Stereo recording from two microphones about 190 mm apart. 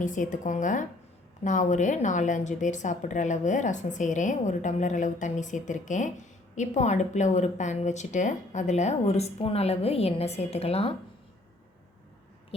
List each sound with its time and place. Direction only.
0.0 s a woman's voice: 40° left (ahead or behind)